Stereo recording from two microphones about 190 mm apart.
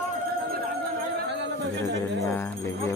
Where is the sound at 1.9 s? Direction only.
15° left (ahead or behind).